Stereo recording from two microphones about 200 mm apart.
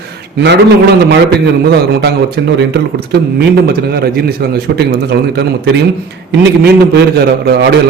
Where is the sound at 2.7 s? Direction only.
55° right (ahead or behind).